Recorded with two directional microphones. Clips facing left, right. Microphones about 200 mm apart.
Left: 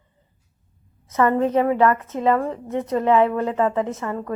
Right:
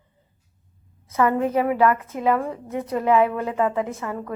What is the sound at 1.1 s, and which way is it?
A woman's voice, 10° right (ahead or behind).